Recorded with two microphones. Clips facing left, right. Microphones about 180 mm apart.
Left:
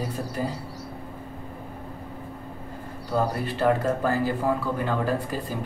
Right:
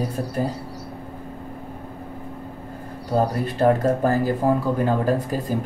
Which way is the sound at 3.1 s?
40° right (ahead or behind).